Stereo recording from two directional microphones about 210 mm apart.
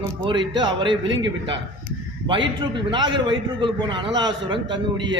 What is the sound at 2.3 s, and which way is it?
A man's voice, 25° right (ahead or behind).